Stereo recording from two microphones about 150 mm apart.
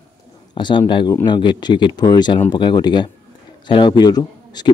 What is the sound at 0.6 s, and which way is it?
Speech, 30° left (ahead or behind).